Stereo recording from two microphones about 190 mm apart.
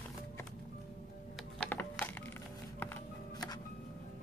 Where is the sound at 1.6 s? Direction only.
10° left (ahead or behind).